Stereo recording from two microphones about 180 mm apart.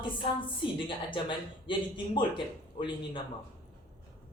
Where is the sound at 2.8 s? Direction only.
30° left (ahead or behind).